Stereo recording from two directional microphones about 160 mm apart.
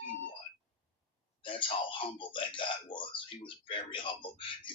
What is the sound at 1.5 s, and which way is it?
A man's voice, 30° left (ahead or behind).